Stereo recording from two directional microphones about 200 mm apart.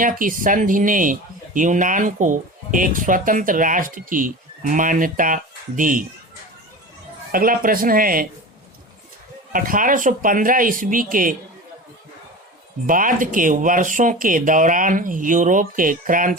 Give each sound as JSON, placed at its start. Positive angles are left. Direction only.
{"t": 0.0, "sound": "speech", "side_deg": -40}
{"t": 7.3, "sound": "speech", "side_deg": -45}
{"t": 9.5, "sound": "speech", "side_deg": -45}
{"t": 12.9, "sound": "speech", "side_deg": -40}